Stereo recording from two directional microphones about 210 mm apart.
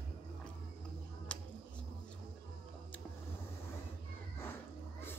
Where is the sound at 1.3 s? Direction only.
5° left (ahead or behind).